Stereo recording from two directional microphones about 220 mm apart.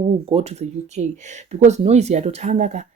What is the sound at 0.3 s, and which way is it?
Speech, 30° right (ahead or behind).